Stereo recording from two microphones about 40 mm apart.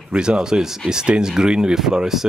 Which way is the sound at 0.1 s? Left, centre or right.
Centre.